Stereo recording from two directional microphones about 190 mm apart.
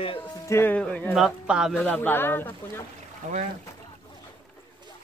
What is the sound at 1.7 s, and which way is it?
Speech, 10° left (ahead or behind).